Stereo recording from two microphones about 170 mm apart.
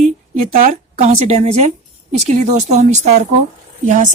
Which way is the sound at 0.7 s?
40° right (ahead or behind).